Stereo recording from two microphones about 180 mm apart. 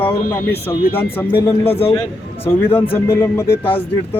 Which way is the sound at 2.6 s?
30° left (ahead or behind).